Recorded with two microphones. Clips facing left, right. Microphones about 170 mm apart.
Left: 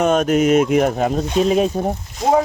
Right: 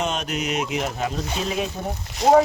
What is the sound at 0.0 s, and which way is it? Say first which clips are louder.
Speech: left 11 dB; 50° left (ahead or behind).